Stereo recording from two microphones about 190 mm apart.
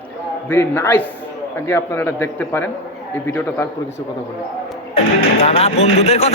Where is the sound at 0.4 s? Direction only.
10° left (ahead or behind).